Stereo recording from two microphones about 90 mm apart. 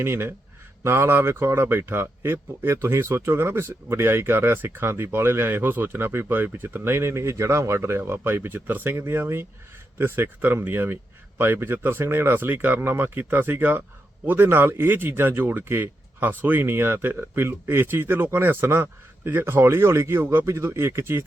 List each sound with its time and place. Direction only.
0.0 s speech: 25° right (ahead or behind)